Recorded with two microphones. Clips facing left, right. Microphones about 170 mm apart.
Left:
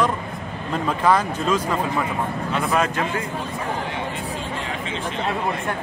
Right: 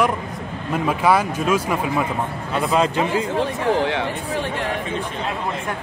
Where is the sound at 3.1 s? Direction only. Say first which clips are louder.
Right 6 dB; 90° right.